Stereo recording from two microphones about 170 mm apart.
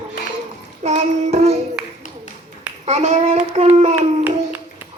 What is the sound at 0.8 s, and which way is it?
Child singing, 40° right (ahead or behind).